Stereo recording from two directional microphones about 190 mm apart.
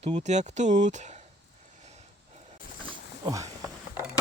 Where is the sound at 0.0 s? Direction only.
35° right (ahead or behind).